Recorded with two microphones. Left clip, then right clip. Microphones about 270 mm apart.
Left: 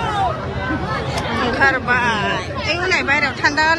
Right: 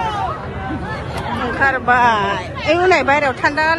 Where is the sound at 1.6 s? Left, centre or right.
Centre.